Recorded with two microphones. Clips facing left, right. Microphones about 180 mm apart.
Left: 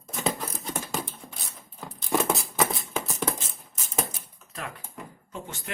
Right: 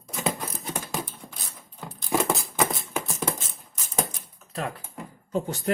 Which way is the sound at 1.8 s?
Centre (ahead or behind).